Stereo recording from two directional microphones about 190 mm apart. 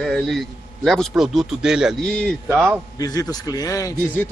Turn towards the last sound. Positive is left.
turn(degrees=20)  # may be behind; listen again after turning